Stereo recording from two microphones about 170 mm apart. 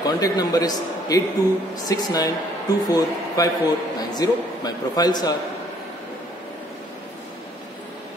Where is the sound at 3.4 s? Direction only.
20° left (ahead or behind).